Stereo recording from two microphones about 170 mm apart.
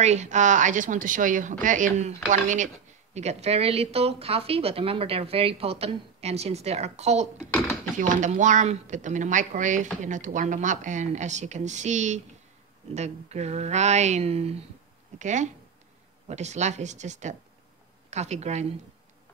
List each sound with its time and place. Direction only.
0.0 s speech: 40° right (ahead or behind)